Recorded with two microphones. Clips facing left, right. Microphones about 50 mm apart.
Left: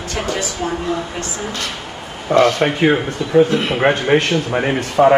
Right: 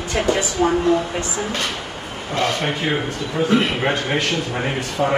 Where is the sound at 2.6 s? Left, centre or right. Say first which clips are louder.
Left 6 dB; left.